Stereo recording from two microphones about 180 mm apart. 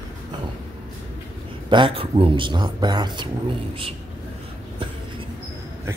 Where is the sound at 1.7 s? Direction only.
30° right (ahead or behind).